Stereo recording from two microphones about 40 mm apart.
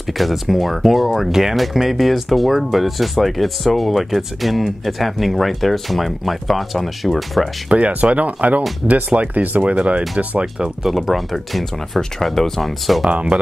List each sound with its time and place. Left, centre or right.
0.2 s speech: centre
7.7 s speech: right
9.6 s speech: right
10.9 s speech: centre
13.0 s speech: right